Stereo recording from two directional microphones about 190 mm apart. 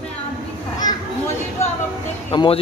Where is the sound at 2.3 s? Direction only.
25° left (ahead or behind).